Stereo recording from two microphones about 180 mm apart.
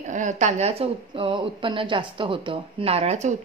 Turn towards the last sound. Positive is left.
turn(degrees=-40)  # may be behind; listen again after turning